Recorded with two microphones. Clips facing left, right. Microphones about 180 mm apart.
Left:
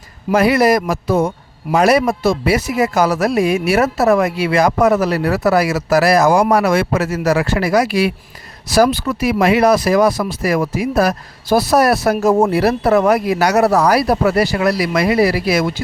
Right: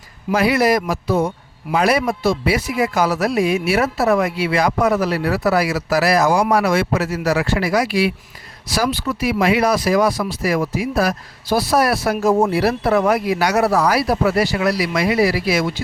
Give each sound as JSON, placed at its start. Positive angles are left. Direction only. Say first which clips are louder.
{"t": 0.3, "sound": "speech", "louder": "left 3 dB", "side_deg": 50}